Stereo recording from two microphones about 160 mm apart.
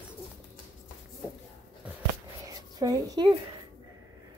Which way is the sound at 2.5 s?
20° right (ahead or behind).